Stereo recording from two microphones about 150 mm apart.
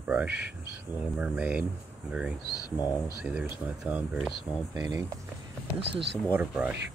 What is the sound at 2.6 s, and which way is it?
Speech, 25° left (ahead or behind).